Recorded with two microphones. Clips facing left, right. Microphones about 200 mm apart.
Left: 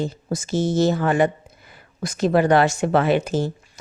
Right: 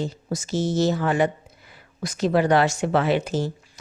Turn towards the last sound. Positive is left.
turn(degrees=50)  # may be behind; listen again after turning